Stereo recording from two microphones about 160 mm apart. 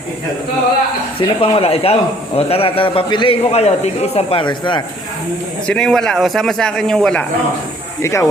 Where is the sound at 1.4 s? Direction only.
35° left (ahead or behind).